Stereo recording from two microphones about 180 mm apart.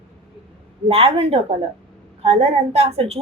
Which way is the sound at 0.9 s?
30° right (ahead or behind).